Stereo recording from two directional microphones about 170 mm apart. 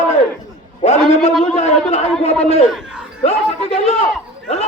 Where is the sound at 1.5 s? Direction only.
40° left (ahead or behind).